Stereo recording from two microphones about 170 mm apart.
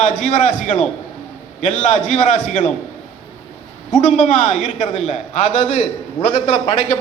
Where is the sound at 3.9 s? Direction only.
50° left (ahead or behind).